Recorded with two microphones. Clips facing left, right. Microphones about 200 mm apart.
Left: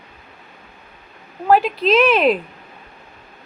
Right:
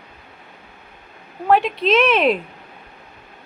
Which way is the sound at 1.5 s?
Centre (ahead or behind).